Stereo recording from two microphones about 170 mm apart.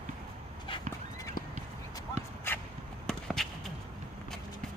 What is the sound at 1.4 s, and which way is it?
Horse, 55° left (ahead or behind).